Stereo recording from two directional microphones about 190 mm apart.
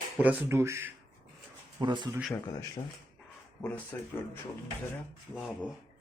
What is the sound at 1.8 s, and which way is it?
Speech, 25° right (ahead or behind).